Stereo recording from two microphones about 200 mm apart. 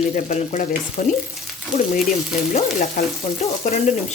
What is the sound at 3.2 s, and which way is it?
Speech, 35° left (ahead or behind).